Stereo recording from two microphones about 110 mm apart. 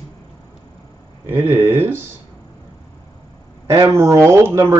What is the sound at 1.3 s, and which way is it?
Speech, 20° right (ahead or behind).